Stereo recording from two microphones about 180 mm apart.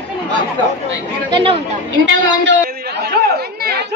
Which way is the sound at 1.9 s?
85° right.